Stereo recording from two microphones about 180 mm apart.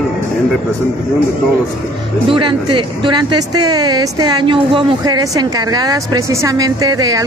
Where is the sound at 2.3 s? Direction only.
25° right (ahead or behind).